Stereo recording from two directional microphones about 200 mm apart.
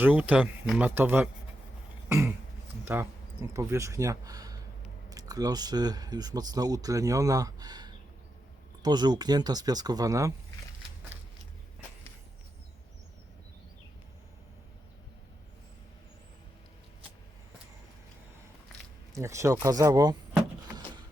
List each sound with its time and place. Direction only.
0.0 s speech: 10° right (ahead or behind)
2.0 s throat clearing: 10° right (ahead or behind)
2.8 s speech: 10° right (ahead or behind)
19.1 s speech: 15° right (ahead or behind)